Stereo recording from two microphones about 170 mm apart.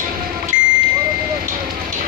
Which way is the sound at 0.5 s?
50° left (ahead or behind).